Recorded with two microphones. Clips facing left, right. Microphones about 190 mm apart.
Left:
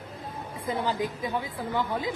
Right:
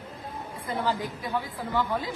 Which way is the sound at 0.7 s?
15° left (ahead or behind).